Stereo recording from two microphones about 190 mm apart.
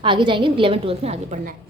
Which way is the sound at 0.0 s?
25° right (ahead or behind).